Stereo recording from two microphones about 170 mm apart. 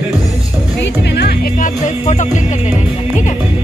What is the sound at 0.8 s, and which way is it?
Music, 85° left.